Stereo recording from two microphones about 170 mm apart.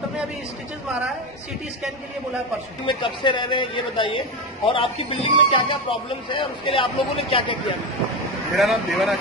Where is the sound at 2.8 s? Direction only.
30° left (ahead or behind).